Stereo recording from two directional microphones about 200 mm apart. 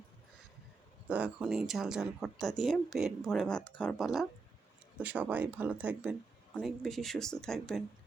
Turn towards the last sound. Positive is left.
turn(degrees=0)  # may be behind; listen again after turning